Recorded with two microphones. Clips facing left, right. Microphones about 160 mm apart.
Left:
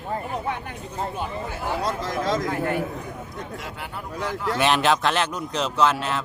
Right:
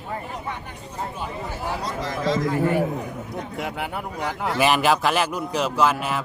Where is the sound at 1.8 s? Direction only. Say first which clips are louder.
Left 1 dB; 50° left (ahead or behind).